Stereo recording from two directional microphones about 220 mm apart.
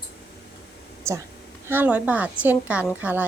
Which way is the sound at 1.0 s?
10° right (ahead or behind).